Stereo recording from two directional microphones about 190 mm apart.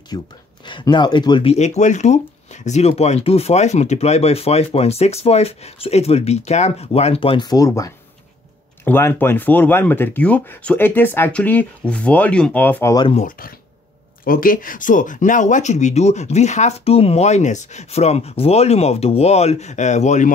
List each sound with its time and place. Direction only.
0.1 s speech: 20° left (ahead or behind)
13.1 s speech: 45° left (ahead or behind)